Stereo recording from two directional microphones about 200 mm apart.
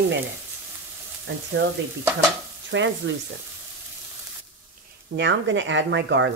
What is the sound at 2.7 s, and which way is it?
Speech, 65° right (ahead or behind).